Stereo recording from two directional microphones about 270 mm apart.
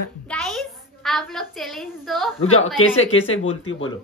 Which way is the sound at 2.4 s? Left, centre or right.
Left.